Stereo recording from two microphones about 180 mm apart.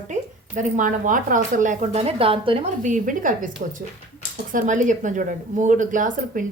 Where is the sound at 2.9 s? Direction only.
50° right (ahead or behind).